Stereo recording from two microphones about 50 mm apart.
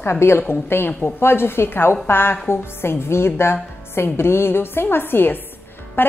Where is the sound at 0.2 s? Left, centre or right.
Left.